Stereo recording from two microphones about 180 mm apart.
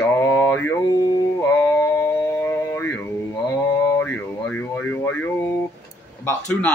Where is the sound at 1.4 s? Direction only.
15° left (ahead or behind).